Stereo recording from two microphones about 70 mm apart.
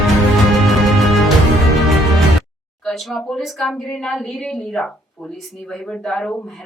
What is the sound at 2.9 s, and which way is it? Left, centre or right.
Speech, centre.